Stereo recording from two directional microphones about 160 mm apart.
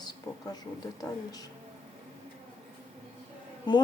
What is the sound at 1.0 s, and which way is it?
Speech, 25° left (ahead or behind).